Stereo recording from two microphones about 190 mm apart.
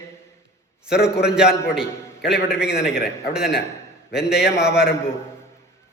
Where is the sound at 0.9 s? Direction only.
5° right (ahead or behind).